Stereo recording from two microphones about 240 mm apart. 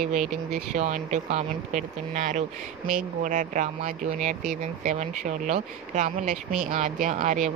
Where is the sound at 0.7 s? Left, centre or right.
Right.